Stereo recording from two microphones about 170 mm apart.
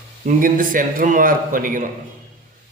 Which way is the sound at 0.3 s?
55° right (ahead or behind).